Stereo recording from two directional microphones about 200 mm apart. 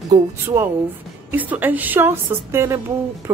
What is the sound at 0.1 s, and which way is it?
A woman's voice, 15° right (ahead or behind).